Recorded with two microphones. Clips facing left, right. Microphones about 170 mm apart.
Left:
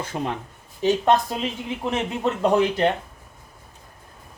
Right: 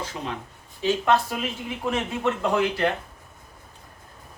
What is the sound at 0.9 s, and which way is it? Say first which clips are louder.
Speech: left 3 dB; 20° left (ahead or behind).